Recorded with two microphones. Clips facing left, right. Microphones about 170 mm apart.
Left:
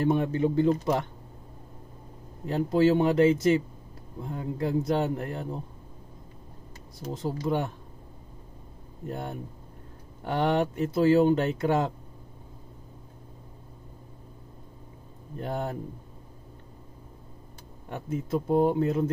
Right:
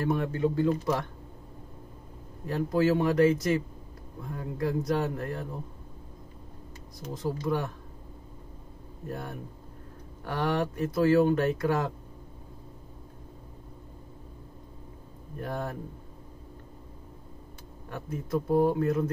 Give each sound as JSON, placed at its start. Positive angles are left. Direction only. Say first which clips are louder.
{"t": 0.0, "sound": "speech", "louder": "left 3 dB", "side_deg": 20}
{"t": 2.4, "sound": "speech", "louder": "left 3 dB", "side_deg": 25}
{"t": 7.0, "sound": "speech", "louder": "left 1 dB", "side_deg": 25}
{"t": 9.0, "sound": "speech", "louder": "left 3 dB", "side_deg": 25}
{"t": 15.3, "sound": "speech", "louder": "left 2 dB", "side_deg": 25}
{"t": 17.8, "sound": "speech", "louder": "left 4 dB", "side_deg": 20}